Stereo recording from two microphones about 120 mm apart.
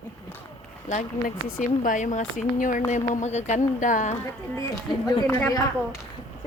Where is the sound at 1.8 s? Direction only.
90° left.